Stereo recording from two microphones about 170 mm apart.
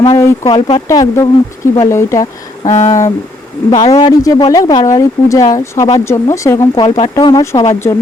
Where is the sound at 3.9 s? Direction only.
20° left (ahead or behind).